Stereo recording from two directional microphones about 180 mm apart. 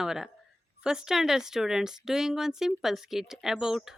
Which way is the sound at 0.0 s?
5° right (ahead or behind).